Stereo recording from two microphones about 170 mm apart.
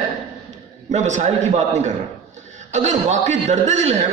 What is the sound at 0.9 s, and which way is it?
A man's voice, 45° right (ahead or behind).